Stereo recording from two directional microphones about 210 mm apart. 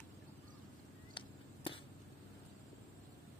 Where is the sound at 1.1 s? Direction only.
25° left (ahead or behind).